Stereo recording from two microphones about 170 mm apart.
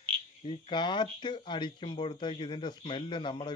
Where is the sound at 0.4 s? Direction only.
30° left (ahead or behind).